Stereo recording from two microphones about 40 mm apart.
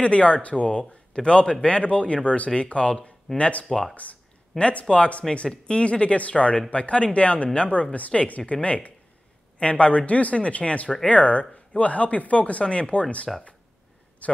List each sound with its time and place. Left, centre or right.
0.0 s a man's voice: left
3.6 s speech: centre
3.9 s speech: left
4.6 s a man's voice: left
13.3 s speech: centre
14.2 s a man's voice: left